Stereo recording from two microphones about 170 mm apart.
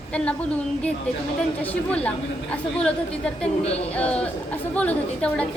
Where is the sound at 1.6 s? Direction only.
10° left (ahead or behind).